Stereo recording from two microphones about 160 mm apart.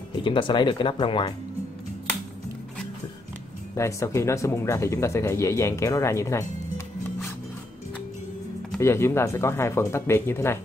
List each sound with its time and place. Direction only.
0.2 s speech: 30° left (ahead or behind)
3.7 s speech: 15° left (ahead or behind)
8.7 s speech: 15° left (ahead or behind)